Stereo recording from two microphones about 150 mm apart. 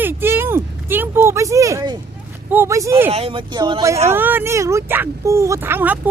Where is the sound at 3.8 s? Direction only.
20° right (ahead or behind).